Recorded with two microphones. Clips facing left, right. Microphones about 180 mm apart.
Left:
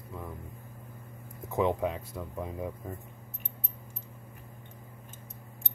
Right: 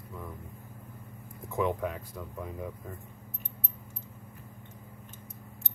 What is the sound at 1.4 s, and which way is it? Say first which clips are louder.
Speech: left 2 dB; 25° left (ahead or behind).